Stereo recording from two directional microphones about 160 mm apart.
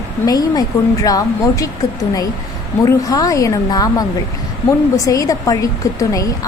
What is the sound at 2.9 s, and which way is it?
A woman's voice, 20° left (ahead or behind).